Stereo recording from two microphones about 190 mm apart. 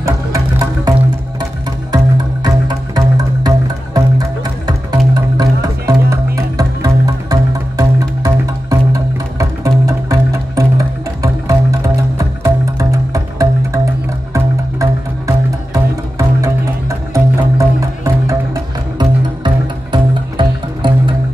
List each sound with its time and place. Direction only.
0.0 s music: 15° right (ahead or behind)
2.4 s music: 20° right (ahead or behind)